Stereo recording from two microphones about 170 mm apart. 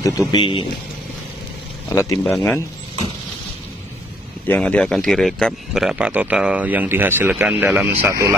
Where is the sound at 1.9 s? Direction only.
15° left (ahead or behind).